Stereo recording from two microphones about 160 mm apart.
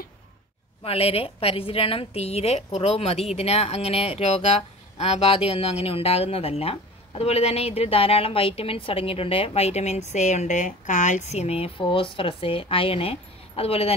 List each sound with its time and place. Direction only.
0.8 s a woman's voice: 40° left (ahead or behind)